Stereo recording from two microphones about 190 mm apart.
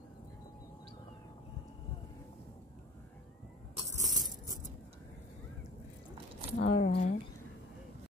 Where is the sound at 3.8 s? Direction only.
40° right (ahead or behind).